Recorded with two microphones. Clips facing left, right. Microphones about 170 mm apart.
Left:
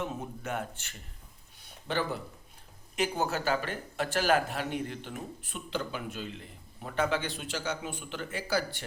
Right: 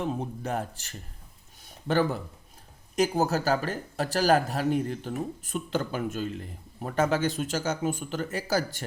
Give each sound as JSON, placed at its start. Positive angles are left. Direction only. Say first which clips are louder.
{"t": 0.0, "sound": "speech", "louder": "right 5 dB", "side_deg": -35}
{"t": 1.6, "sound": "a sound", "louder": "right 7 dB", "side_deg": -45}
{"t": 2.9, "sound": "speech", "louder": "right 6 dB", "side_deg": -40}